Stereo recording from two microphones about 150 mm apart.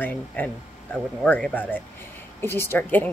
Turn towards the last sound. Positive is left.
turn(degrees=10)  # may be behind; listen again after turning